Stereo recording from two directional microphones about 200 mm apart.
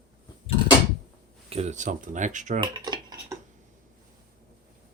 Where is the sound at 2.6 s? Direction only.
20° right (ahead or behind).